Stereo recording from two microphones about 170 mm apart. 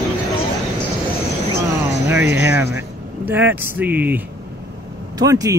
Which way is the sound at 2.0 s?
15° right (ahead or behind).